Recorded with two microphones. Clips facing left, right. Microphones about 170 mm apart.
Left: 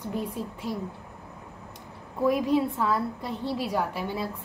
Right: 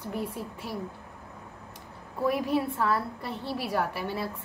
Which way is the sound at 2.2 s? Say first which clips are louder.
Left 3 dB; 15° left (ahead or behind).